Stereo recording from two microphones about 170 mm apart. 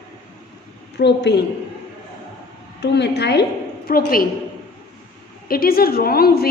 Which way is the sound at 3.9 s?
60° left (ahead or behind).